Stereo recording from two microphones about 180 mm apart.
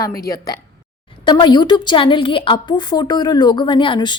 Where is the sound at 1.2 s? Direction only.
25° left (ahead or behind).